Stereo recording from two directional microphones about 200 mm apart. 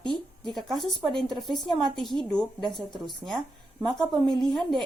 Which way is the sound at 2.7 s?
20° left (ahead or behind).